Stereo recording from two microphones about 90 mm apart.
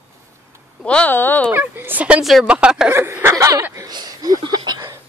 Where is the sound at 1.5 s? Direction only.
25° right (ahead or behind).